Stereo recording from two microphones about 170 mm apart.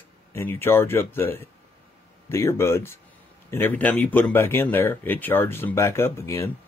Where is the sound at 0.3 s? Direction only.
15° left (ahead or behind).